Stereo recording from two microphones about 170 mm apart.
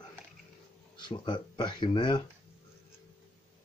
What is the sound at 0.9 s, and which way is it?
Speech, 25° left (ahead or behind).